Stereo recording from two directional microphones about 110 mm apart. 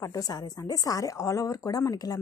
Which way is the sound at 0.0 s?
30° left (ahead or behind).